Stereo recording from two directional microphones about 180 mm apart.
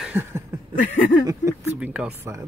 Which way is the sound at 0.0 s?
10° right (ahead or behind).